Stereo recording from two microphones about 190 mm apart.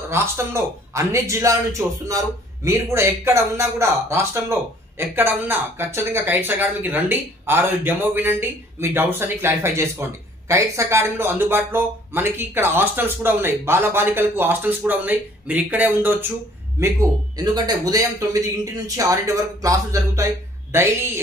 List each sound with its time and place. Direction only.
0.1 s a man's voice: 15° right (ahead or behind)